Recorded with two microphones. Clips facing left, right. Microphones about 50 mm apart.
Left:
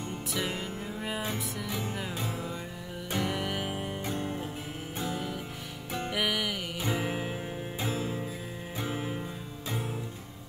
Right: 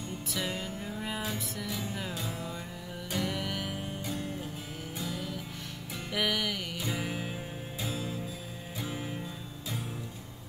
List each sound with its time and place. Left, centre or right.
0.3 s music: centre
1.7 s music: left
3.1 s music: centre; by 4.5 s left
5.0 s music: left
6.1 s music: centre
6.9 s music: centre
7.8 s music: left